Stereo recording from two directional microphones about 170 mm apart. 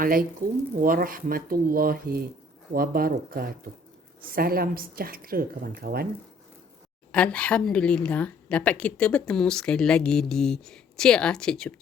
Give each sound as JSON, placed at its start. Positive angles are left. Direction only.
{"t": 0.0, "sound": "a woman's voice", "side_deg": -55}
{"t": 7.1, "sound": "a woman's voice", "side_deg": 5}